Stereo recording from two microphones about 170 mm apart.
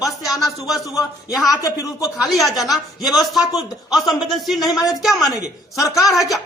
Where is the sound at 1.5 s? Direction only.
20° left (ahead or behind).